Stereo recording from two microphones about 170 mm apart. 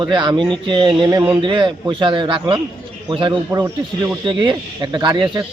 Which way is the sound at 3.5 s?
20° right (ahead or behind).